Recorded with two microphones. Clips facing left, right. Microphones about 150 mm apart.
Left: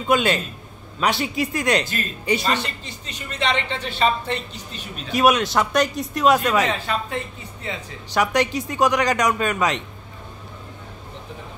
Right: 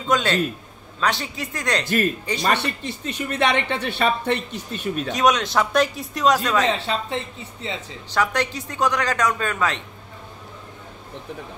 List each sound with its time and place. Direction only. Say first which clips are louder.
0.1 s speech: left 1 dB; 10° left (ahead or behind)
2.4 s speech: right 2 dB; 60° right (ahead or behind)
5.1 s speech: left 3 dB; 5° left (ahead or behind)
6.7 s speech: right 1 dB; 25° right (ahead or behind)
8.1 s speech: left 2 dB; 15° left (ahead or behind)